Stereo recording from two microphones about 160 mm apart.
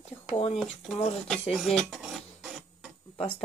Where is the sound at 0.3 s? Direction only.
35° left (ahead or behind).